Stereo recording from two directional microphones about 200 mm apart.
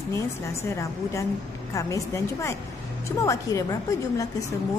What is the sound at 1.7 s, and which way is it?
Speech, 15° left (ahead or behind).